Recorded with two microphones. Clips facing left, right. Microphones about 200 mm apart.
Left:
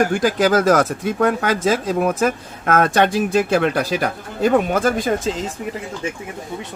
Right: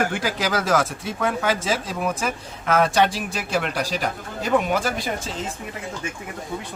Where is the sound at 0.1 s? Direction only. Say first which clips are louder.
Left 8 dB; 45° left (ahead or behind).